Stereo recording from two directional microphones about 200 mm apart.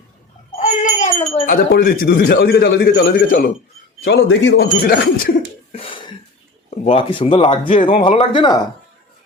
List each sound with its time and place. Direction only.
0.6 s a sound: 35° left (ahead or behind)
1.5 s a man's voice: 45° left (ahead or behind)
4.0 s a man's voice: 65° left (ahead or behind)
5.7 s a sound: 25° left (ahead or behind)
6.7 s speech: 30° left (ahead or behind)
7.8 s a man's voice: 40° left (ahead or behind)
8.0 s speech: 30° left (ahead or behind)